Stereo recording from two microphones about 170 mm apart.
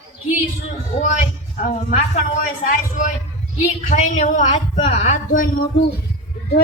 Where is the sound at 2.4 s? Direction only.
50° left (ahead or behind).